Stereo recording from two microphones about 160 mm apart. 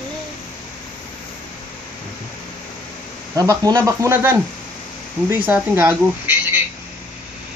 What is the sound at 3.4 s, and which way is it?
Speech, 25° right (ahead or behind).